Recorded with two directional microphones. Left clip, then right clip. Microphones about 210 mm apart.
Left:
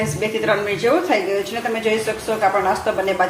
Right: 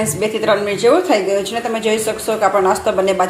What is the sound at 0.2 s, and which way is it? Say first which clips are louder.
A woman's voice: right 4 dB; 30° right (ahead or behind).